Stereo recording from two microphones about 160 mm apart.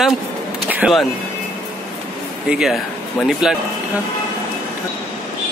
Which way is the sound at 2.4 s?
5° right (ahead or behind).